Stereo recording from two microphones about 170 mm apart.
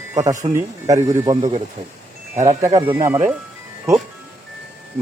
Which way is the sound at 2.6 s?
15° right (ahead or behind).